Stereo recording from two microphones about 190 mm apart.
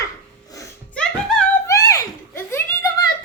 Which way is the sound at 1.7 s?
15° left (ahead or behind).